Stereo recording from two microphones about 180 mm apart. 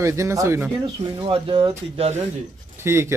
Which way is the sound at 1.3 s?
30° right (ahead or behind).